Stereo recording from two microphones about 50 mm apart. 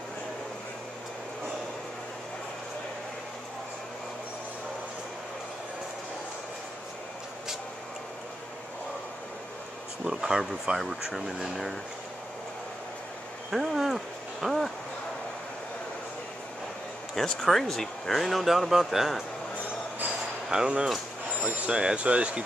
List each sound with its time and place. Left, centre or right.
10.0 s speech: centre
13.5 s a sound: centre
17.1 s speech: centre
20.4 s speech: centre